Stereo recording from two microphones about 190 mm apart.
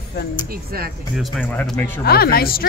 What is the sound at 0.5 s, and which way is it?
Speech, 50° right (ahead or behind).